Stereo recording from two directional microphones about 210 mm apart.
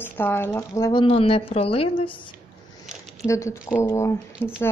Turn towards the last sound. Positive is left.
turn(degrees=-5)  # may be behind; listen again after turning